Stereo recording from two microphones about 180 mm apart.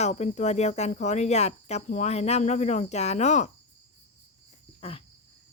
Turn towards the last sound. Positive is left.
turn(degrees=35)  # may be behind; listen again after turning